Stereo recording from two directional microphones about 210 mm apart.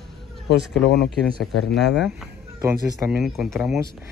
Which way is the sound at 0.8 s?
55° left (ahead or behind).